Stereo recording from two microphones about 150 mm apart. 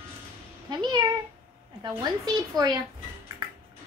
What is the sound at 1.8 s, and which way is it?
Speech, 25° right (ahead or behind).